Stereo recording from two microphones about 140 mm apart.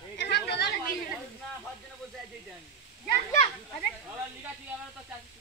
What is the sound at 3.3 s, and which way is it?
Children playing, 60° left (ahead or behind).